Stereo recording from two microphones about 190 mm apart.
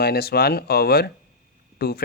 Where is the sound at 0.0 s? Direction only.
55° left (ahead or behind).